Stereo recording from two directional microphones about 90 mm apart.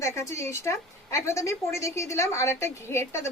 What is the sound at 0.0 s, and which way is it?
A woman's voice, 30° left (ahead or behind).